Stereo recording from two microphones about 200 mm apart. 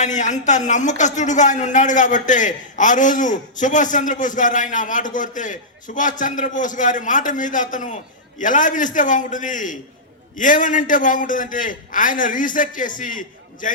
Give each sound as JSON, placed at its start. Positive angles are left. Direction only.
{"t": 0.0, "sound": "speech", "side_deg": 35}